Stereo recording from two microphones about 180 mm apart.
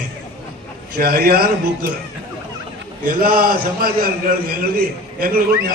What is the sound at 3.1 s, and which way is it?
A man's voice, 55° right (ahead or behind).